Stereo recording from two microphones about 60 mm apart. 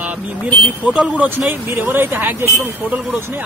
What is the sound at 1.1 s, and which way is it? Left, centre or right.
Speech, right.